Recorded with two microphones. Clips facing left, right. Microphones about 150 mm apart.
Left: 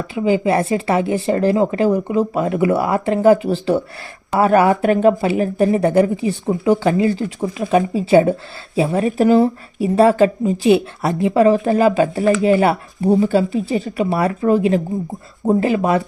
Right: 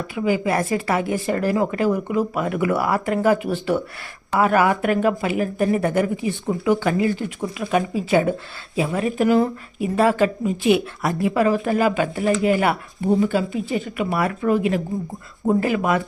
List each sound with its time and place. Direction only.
0.1 s speech: 25° left (ahead or behind)